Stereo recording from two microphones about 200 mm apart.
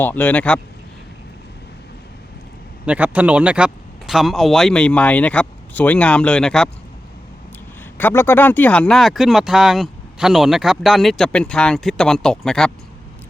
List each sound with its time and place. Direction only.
0.0 s speech: 10° left (ahead or behind)
2.8 s speech: 5° right (ahead or behind)
7.9 s speech: 10° left (ahead or behind)